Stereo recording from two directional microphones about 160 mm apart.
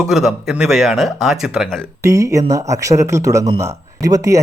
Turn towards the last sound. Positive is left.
turn(degrees=-20)  # may be behind; listen again after turning